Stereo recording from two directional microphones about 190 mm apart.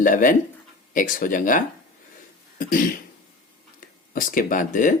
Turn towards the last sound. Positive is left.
turn(degrees=45)  # may be behind; listen again after turning